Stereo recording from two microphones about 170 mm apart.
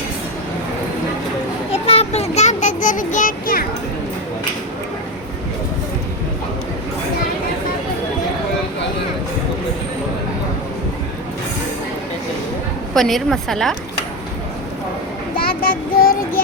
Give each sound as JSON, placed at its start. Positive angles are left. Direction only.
{"t": 1.7, "sound": "child singing", "side_deg": 35}
{"t": 12.9, "sound": "a woman's voice", "side_deg": 0}
{"t": 15.4, "sound": "child singing", "side_deg": 60}